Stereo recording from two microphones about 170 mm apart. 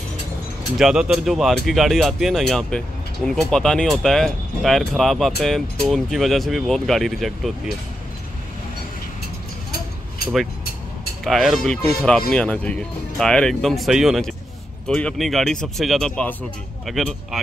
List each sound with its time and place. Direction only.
0.7 s speech: 5° right (ahead or behind)
9.7 s a sound: 65° left (ahead or behind)
11.2 s speech: centre (ahead or behind)